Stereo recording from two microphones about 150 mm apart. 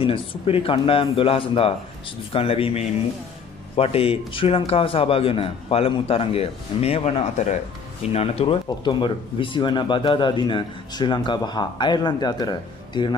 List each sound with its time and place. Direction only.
0.0 s a man's voice: 35° left (ahead or behind)
8.6 s a man's voice: 30° left (ahead or behind)